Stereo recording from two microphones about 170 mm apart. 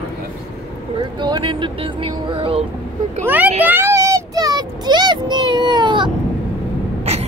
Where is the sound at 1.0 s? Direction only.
25° right (ahead or behind).